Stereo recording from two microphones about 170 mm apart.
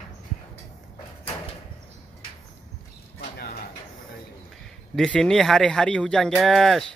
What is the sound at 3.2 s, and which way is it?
Bird, 70° left (ahead or behind).